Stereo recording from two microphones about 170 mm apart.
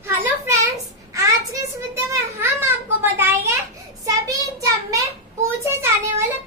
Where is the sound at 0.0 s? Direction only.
15° right (ahead or behind).